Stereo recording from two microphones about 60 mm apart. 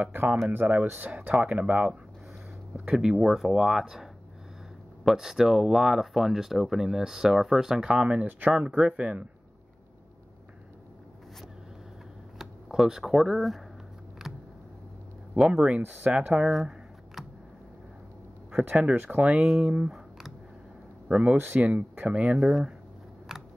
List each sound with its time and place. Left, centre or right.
0.0 s speech: right
2.9 s speech: centre
7.8 s speech: centre
12.4 s computer keyboard: centre
12.8 s speech: centre
14.2 s vehicle: centre
15.4 s speech: centre
15.8 s speech: right
16.1 s speech: centre
18.7 s speech: right
19.6 s a sound: centre
21.1 s speech: centre
22.4 s speech: centre